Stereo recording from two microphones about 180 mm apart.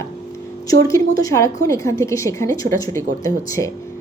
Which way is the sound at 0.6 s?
20° left (ahead or behind).